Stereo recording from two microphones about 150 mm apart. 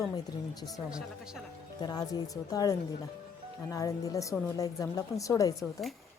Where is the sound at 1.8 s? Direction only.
25° left (ahead or behind).